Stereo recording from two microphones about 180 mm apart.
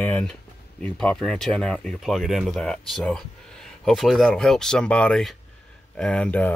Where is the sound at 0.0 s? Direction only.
5° left (ahead or behind).